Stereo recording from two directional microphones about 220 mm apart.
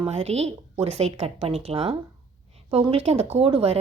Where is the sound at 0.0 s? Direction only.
30° right (ahead or behind).